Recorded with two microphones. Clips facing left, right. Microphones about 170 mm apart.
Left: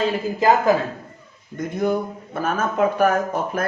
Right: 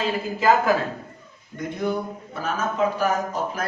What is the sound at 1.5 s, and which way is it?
Speech, 45° left (ahead or behind).